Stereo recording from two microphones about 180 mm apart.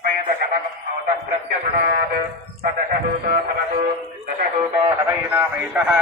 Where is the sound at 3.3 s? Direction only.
55° right (ahead or behind).